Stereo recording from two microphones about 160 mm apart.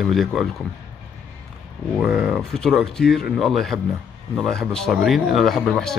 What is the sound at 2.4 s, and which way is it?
A man's voice, 5° left (ahead or behind).